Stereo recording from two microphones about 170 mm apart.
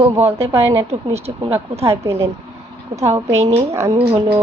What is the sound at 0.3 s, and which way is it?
Speech, 15° right (ahead or behind).